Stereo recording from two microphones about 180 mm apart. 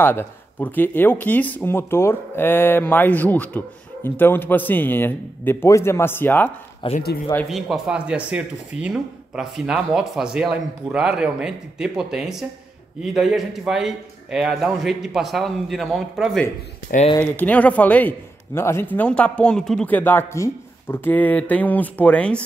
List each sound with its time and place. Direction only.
0.0 s speech: 10° left (ahead or behind)
6.8 s speech: 30° left (ahead or behind)
7.4 s speech: centre (ahead or behind)